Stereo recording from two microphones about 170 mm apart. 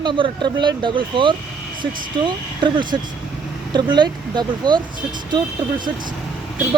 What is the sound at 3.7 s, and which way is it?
Speech, 25° right (ahead or behind).